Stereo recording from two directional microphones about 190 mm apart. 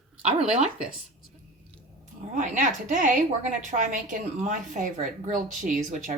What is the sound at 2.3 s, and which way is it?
A woman's voice, 45° right (ahead or behind).